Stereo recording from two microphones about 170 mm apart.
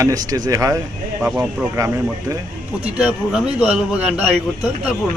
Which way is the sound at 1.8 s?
20° right (ahead or behind).